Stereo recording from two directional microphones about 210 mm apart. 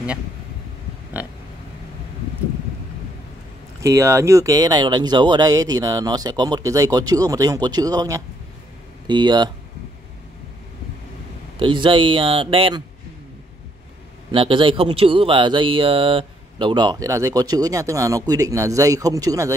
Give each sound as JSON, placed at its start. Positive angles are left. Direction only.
{"t": 1.2, "sound": "speech", "side_deg": -5}
{"t": 3.8, "sound": "speech", "side_deg": -15}
{"t": 11.6, "sound": "speech", "side_deg": -25}
{"t": 14.3, "sound": "speech", "side_deg": -25}